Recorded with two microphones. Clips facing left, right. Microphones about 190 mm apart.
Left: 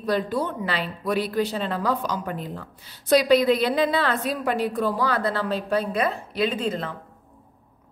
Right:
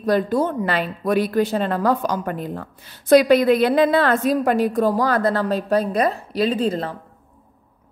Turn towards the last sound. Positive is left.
turn(degrees=-35)  # may be behind; listen again after turning